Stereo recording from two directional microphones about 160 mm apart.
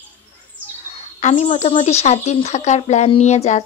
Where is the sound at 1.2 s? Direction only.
45° left (ahead or behind).